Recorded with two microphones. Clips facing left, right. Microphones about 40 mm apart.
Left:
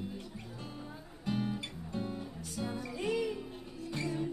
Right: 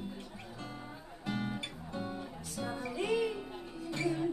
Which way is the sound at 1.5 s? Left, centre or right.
Right.